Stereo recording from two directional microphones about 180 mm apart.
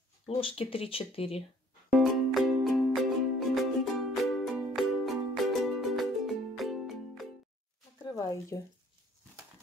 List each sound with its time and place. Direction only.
0.4 s speech: 30° left (ahead or behind)
2.0 s music: centre (ahead or behind)
8.0 s a sound: 20° left (ahead or behind)